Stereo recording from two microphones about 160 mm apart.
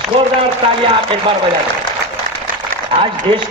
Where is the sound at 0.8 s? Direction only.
35° right (ahead or behind).